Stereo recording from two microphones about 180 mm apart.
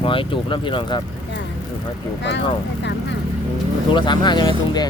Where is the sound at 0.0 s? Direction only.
30° left (ahead or behind).